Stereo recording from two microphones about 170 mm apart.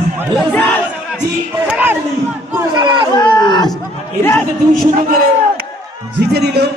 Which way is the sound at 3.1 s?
25° left (ahead or behind).